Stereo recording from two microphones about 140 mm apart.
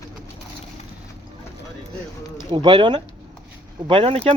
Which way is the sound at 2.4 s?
35° right (ahead or behind).